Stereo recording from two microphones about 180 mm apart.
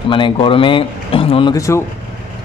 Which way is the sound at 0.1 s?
30° left (ahead or behind).